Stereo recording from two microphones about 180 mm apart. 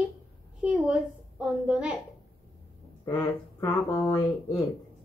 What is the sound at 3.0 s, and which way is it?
Speech, 20° left (ahead or behind).